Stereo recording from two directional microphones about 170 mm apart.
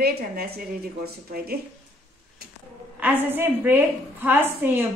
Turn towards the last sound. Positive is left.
turn(degrees=-10)  # may be behind; listen again after turning